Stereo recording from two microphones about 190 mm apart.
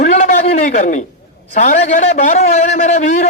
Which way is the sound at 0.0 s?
40° left (ahead or behind).